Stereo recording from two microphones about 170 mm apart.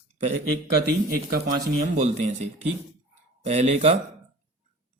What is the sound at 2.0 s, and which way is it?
Speech, 40° right (ahead or behind).